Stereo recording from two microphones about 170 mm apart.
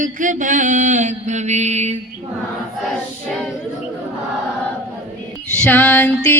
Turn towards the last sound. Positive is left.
turn(degrees=10)  # may be behind; listen again after turning